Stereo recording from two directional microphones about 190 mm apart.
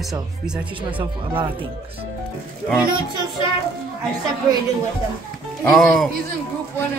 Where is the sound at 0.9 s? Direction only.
25° right (ahead or behind).